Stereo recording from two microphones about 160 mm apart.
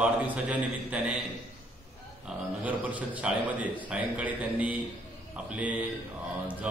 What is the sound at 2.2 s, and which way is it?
A man's voice, 10° right (ahead or behind).